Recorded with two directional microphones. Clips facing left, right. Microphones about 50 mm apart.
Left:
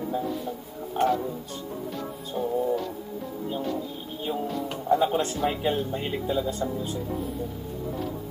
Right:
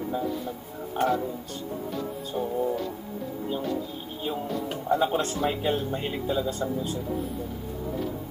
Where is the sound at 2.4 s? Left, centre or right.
Centre.